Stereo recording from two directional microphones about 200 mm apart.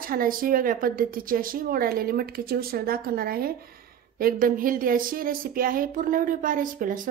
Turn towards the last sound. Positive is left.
turn(degrees=-40)  # may be behind; listen again after turning